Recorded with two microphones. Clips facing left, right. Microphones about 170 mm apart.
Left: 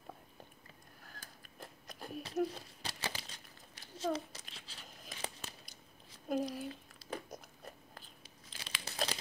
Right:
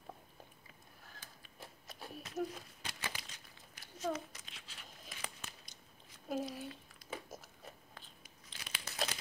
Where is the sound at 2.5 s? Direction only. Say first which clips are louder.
Left 2 dB; 35° left (ahead or behind).